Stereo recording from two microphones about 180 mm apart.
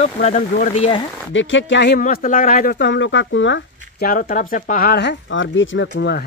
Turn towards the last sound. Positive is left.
turn(degrees=70)  # may be behind; listen again after turning